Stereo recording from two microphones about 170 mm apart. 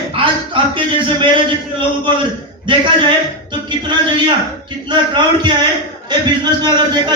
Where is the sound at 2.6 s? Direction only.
30° right (ahead or behind).